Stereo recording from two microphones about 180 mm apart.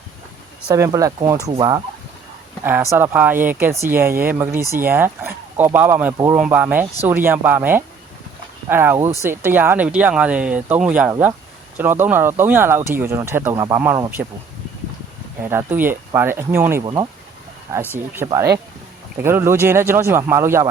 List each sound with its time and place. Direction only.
0.7 s speech: 20° right (ahead or behind)
2.6 s speech: 15° right (ahead or behind)
15.4 s speech: 10° right (ahead or behind)
17.9 s speech: 10° right (ahead or behind)